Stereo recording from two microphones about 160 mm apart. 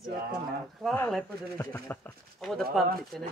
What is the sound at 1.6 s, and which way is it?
Speech, 15° left (ahead or behind).